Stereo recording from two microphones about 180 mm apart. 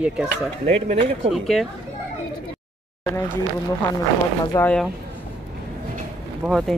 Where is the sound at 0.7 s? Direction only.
35° right (ahead or behind).